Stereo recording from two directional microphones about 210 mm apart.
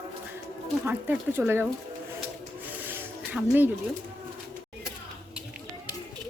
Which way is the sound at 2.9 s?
10° right (ahead or behind).